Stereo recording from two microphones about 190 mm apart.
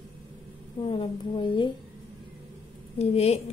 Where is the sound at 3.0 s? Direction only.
35° left (ahead or behind).